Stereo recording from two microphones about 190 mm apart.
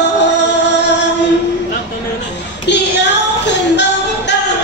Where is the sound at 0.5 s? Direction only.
65° left (ahead or behind).